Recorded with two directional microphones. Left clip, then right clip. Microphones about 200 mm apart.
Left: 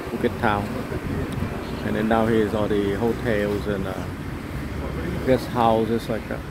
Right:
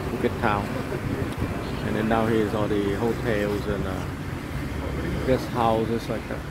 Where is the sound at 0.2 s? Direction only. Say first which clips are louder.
Left 2 dB; 15° left (ahead or behind).